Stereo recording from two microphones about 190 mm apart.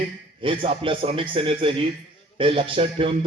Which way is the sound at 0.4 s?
25° right (ahead or behind).